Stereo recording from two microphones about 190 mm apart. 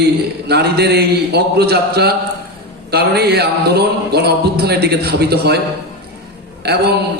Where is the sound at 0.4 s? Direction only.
60° right (ahead or behind).